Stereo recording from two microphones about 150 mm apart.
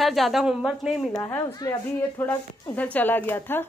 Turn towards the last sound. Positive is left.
turn(degrees=15)  # may be behind; listen again after turning